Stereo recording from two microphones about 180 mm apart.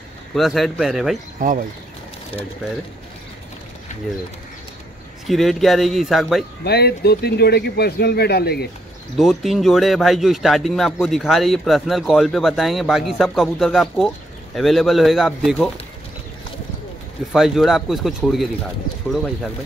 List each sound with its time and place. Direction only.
0.3 s speech: centre (ahead or behind)
1.4 s speech: 50° right (ahead or behind)
3.9 s bird: 40° left (ahead or behind)
5.2 s speech: centre (ahead or behind)
6.6 s a man's voice: 60° left (ahead or behind)
9.1 s speech: centre (ahead or behind)
17.3 s speech: centre (ahead or behind)